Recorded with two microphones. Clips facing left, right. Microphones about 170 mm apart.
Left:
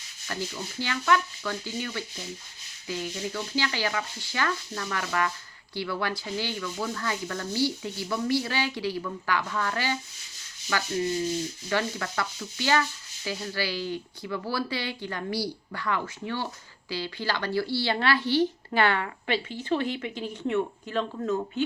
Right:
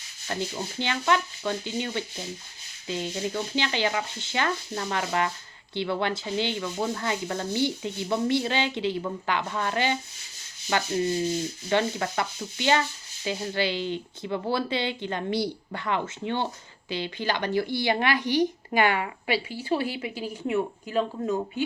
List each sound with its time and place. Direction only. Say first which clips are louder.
0.3 s sanding: right 3 dB; 30° right (ahead or behind)
16.9 s speech: right 2 dB; 20° right (ahead or behind)